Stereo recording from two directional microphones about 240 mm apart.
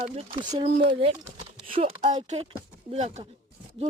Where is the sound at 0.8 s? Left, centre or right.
Right.